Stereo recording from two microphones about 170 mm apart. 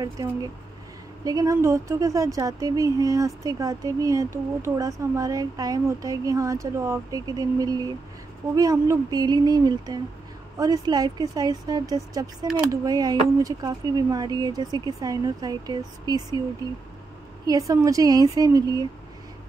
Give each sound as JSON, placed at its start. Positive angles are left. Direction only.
{"t": 0.0, "sound": "speech", "side_deg": -20}
{"t": 17.5, "sound": "speech", "side_deg": -20}